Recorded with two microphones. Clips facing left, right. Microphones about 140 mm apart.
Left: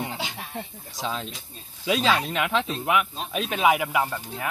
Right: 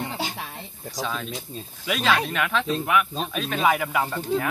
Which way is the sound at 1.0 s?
25° left (ahead or behind).